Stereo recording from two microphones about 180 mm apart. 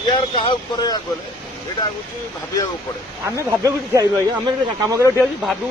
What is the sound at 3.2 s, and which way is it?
Speech, 15° right (ahead or behind).